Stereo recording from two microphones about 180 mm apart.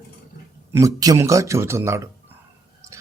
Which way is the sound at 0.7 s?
20° right (ahead or behind).